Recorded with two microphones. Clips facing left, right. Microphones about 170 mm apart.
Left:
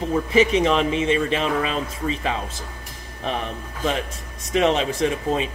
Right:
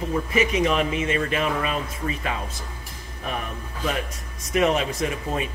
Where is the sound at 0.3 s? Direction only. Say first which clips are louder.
Left 4 dB; 30° left (ahead or behind).